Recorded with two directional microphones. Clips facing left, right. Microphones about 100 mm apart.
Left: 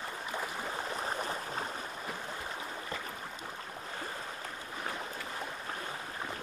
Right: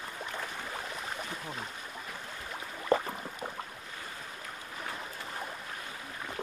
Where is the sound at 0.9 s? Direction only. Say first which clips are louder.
Left 4 dB; 35° left (ahead or behind).